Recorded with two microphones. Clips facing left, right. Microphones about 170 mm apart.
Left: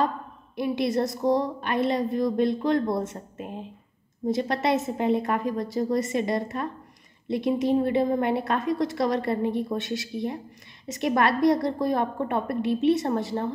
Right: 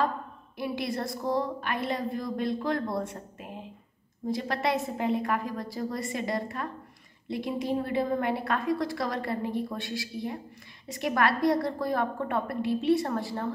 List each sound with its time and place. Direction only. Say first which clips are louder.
0.6 s a woman's voice: left 7 dB; 20° left (ahead or behind)